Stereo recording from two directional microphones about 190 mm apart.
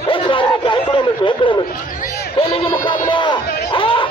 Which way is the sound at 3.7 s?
25° left (ahead or behind).